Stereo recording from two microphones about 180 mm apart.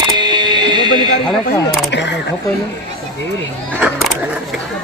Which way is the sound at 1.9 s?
75° left (ahead or behind).